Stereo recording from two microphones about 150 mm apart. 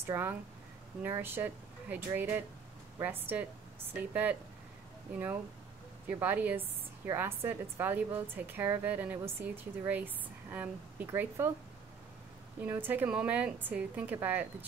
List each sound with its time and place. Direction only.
0.1 s a woman's voice: 15° right (ahead or behind)
6.0 s a woman's voice: 10° right (ahead or behind)
12.6 s a woman's voice: 15° right (ahead or behind)